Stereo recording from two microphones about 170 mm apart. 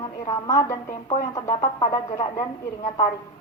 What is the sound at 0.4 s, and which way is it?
A woman's voice, 20° left (ahead or behind).